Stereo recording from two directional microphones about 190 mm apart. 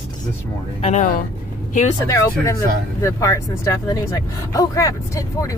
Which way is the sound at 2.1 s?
15° left (ahead or behind).